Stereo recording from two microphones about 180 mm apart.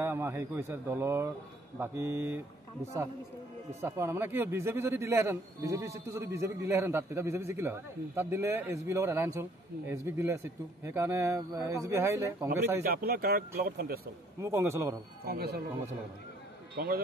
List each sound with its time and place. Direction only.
0.0 s a man's voice: 15° right (ahead or behind)
12.8 s speech: 55° right (ahead or behind)
14.4 s a man's voice: 15° right (ahead or behind)
15.2 s speech: 60° right (ahead or behind)
16.7 s speech: 55° right (ahead or behind)